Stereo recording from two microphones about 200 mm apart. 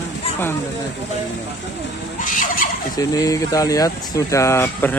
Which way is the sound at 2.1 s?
40° left (ahead or behind).